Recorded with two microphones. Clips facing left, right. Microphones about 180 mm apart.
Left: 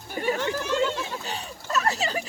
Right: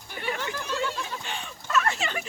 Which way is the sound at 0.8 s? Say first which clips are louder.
Left 5 dB; 20° left (ahead or behind).